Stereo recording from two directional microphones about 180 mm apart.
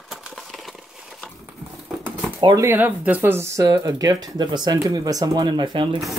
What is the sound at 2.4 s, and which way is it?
Speech, 20° right (ahead or behind).